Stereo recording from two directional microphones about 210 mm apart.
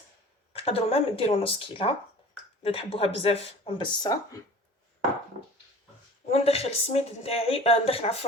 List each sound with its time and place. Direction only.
0.5 s speech: 30° left (ahead or behind)
6.3 s speech: 30° left (ahead or behind)